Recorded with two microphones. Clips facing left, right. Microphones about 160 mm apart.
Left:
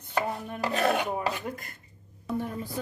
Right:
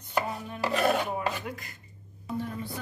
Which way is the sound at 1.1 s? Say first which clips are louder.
Left 1 dB; 45° left (ahead or behind).